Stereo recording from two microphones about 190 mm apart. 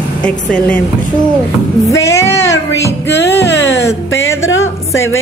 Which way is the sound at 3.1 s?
65° left (ahead or behind).